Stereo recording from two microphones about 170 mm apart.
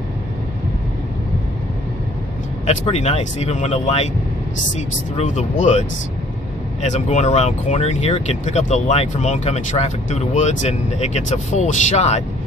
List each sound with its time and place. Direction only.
2.6 s speech: 40° left (ahead or behind)